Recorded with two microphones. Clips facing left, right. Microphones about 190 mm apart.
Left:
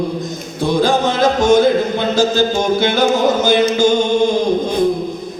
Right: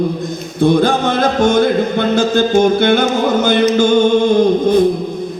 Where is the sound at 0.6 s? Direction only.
55° right (ahead or behind).